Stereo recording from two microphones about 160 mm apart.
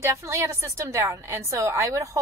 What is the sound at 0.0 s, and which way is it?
A woman's voice, 20° right (ahead or behind).